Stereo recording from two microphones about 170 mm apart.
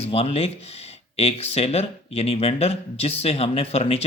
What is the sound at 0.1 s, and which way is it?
Speech, 35° left (ahead or behind).